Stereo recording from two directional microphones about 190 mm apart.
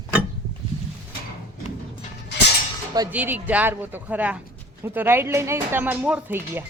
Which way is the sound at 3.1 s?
10° right (ahead or behind).